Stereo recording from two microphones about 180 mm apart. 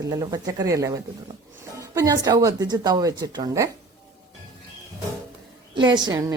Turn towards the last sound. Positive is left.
turn(degrees=-20)  # may be behind; listen again after turning